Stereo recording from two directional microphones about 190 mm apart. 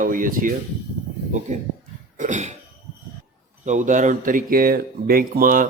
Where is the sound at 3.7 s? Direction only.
40° right (ahead or behind).